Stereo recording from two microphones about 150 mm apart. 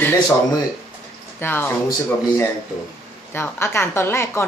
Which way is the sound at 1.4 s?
15° left (ahead or behind).